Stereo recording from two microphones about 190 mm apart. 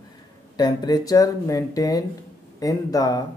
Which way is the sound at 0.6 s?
20° left (ahead or behind).